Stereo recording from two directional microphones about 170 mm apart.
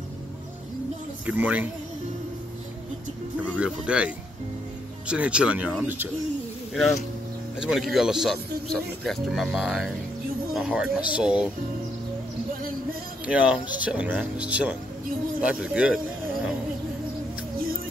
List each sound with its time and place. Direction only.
1.2 s speech: 10° right (ahead or behind)
3.5 s speech: 5° right (ahead or behind)
7.6 s speech: centre (ahead or behind)
13.3 s speech: 10° right (ahead or behind)